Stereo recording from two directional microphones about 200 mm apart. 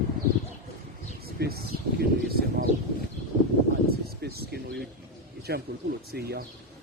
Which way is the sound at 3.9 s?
50° right (ahead or behind).